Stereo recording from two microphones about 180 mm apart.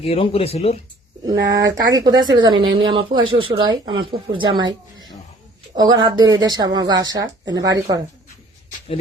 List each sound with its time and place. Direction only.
0.0 s speech: 35° left (ahead or behind)
1.2 s speech: 20° right (ahead or behind)
2.5 s speech: 90° right
2.7 s speech: 25° right (ahead or behind)